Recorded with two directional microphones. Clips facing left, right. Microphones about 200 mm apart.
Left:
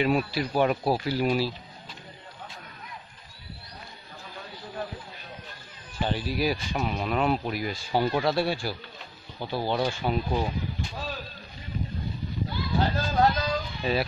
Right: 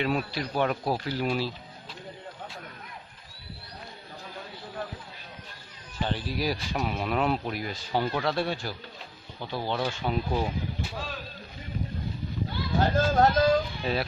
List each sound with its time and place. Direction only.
0.0 s speech: 10° left (ahead or behind)
5.9 s speech: 10° left (ahead or behind)
10.3 s speech: 5° right (ahead or behind)
12.7 s speech: 50° right (ahead or behind)
13.8 s speech: centre (ahead or behind)